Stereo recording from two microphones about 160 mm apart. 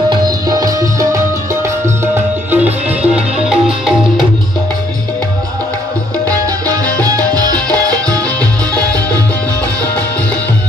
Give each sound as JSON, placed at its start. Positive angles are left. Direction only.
{"t": 0.1, "sound": "tabla", "side_deg": -25}
{"t": 2.5, "sound": "music", "side_deg": -10}
{"t": 7.8, "sound": "music", "side_deg": -25}